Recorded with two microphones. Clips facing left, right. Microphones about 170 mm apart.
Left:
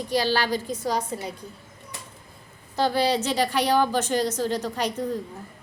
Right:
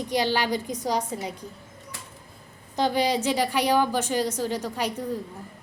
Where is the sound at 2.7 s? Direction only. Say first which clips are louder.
Left 1 dB; 15° right (ahead or behind).